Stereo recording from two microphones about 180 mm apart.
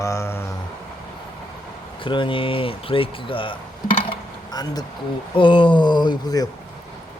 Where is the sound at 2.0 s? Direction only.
30° left (ahead or behind).